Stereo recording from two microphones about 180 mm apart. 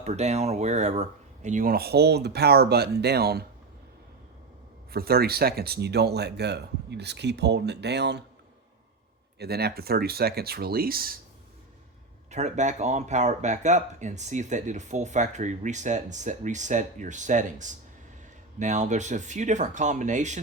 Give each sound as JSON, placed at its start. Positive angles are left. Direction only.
{"t": 0.0, "sound": "speech", "side_deg": -35}
{"t": 4.9, "sound": "speech", "side_deg": -60}
{"t": 9.4, "sound": "speech", "side_deg": -60}
{"t": 12.3, "sound": "speech", "side_deg": -40}